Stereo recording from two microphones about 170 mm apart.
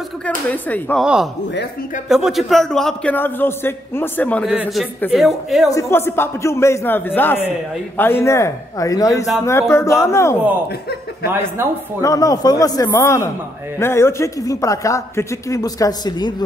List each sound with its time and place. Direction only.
0.5 s a man's voice: 10° left (ahead or behind)
1.0 s a man's voice: 5° right (ahead or behind)
5.7 s a man's voice: 15° left (ahead or behind)
11.3 s speech: 15° right (ahead or behind)
12.0 s speech: 20° left (ahead or behind)